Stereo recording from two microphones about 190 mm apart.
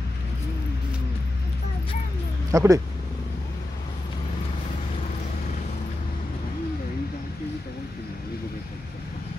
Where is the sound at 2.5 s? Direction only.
15° right (ahead or behind).